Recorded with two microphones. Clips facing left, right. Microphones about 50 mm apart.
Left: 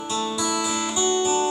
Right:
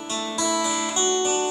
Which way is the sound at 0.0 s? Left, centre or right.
Right.